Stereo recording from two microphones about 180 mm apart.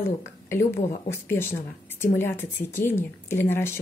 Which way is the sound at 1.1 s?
15° left (ahead or behind).